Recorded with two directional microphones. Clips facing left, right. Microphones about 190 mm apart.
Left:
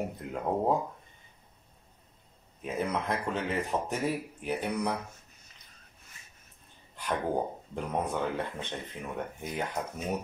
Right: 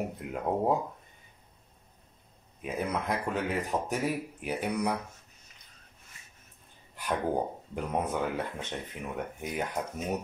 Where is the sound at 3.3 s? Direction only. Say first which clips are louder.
Right 1 dB; 5° right (ahead or behind).